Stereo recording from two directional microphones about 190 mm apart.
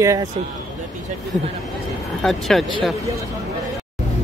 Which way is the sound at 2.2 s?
Centre (ahead or behind).